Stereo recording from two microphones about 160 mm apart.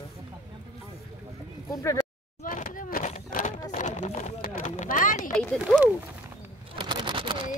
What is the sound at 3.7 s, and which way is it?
Clip-clop, 50° left (ahead or behind).